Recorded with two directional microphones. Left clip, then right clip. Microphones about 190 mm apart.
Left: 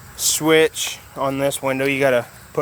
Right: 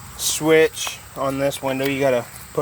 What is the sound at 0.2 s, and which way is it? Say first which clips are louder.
Speech: even; 25° left (ahead or behind).